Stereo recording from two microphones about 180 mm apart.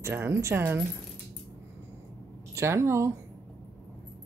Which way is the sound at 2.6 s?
15° right (ahead or behind).